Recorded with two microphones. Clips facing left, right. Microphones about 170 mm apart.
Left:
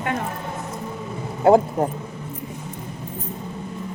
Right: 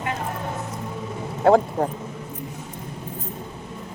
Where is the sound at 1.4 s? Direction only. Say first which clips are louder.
Left 2 dB; 20° left (ahead or behind).